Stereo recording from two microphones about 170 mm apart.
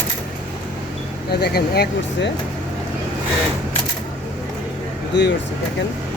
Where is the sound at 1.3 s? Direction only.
70° left (ahead or behind).